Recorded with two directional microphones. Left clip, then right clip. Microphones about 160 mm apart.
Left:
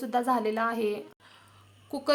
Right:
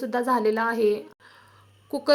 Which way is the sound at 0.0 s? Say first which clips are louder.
Right 4 dB; 20° right (ahead or behind).